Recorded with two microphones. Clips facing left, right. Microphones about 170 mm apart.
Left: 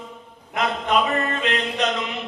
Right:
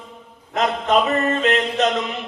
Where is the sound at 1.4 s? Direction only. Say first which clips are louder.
Right 5 dB; 45° right (ahead or behind).